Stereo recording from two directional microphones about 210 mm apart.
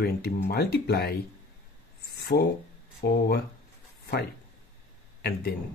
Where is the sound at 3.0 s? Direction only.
50° left (ahead or behind).